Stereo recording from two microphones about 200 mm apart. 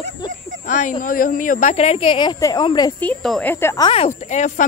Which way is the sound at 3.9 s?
35° left (ahead or behind).